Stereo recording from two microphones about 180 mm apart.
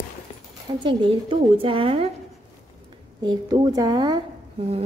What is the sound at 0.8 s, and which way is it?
A woman's voice, 25° right (ahead or behind).